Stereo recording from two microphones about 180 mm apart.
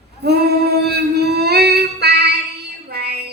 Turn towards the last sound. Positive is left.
turn(degrees=-60)  # may be behind; listen again after turning